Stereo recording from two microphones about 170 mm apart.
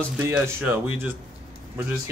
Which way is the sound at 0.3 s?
10° right (ahead or behind).